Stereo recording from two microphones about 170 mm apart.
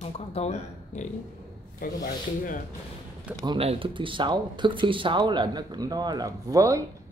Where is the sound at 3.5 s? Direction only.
35° right (ahead or behind).